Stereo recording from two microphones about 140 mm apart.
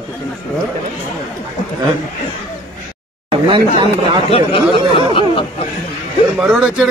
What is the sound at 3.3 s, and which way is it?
Speech, 35° right (ahead or behind).